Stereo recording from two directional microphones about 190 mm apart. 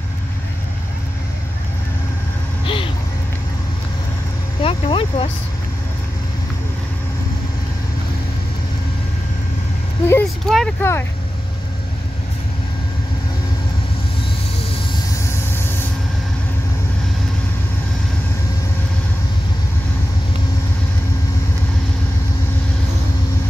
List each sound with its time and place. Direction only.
2.6 s a sound: 25° left (ahead or behind)
4.6 s vehicle: 30° left (ahead or behind)
10.0 s vehicle: 10° left (ahead or behind)